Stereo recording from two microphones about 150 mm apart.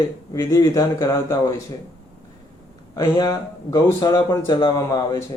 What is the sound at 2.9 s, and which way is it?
Speech, 20° left (ahead or behind).